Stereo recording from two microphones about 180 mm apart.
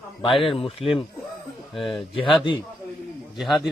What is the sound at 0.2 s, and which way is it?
Speech, 30° left (ahead or behind).